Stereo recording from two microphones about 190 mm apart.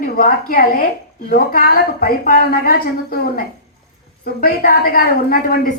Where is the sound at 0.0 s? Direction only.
45° left (ahead or behind).